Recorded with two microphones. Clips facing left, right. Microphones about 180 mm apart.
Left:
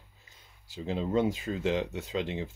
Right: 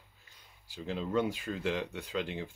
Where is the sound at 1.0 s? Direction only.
25° left (ahead or behind).